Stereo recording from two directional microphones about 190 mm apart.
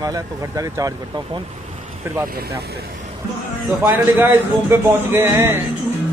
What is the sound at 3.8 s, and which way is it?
Speech, 10° right (ahead or behind).